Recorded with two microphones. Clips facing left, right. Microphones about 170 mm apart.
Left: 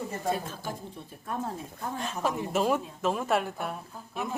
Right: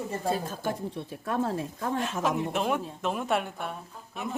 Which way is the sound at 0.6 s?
70° right (ahead or behind).